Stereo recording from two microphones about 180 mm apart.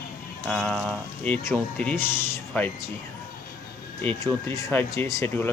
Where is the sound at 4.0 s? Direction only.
10° left (ahead or behind).